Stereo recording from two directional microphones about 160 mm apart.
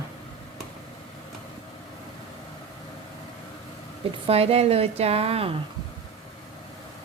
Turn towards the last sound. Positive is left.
turn(degrees=-40)  # may be behind; listen again after turning